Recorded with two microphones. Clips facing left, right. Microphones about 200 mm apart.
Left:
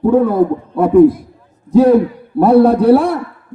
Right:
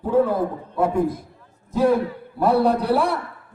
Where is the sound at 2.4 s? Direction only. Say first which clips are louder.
Left 10 dB; 50° left (ahead or behind).